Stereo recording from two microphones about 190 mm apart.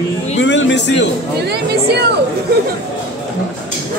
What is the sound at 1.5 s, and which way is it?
Speech, 60° right (ahead or behind).